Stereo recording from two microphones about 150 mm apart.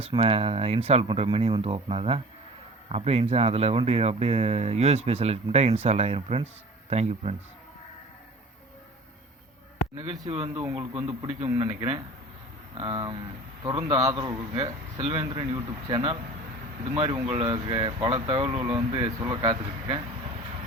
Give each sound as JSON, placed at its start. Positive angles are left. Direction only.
{"t": 0.0, "sound": "speech", "side_deg": -40}
{"t": 9.9, "sound": "speech", "side_deg": -45}
{"t": 10.5, "sound": "speech", "side_deg": -15}
{"t": 10.9, "sound": "speech", "side_deg": -30}
{"t": 11.4, "sound": "speech", "side_deg": -25}
{"t": 16.9, "sound": "speech", "side_deg": -40}